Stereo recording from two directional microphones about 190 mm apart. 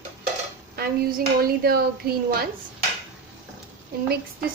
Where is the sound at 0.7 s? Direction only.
50° right (ahead or behind).